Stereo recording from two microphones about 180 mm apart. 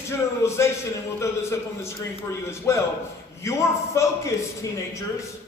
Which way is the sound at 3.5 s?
15° left (ahead or behind).